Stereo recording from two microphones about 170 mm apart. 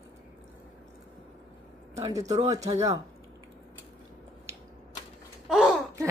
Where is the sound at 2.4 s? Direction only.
20° right (ahead or behind).